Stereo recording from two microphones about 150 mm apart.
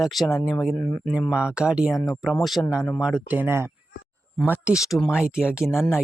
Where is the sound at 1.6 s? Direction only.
5° right (ahead or behind).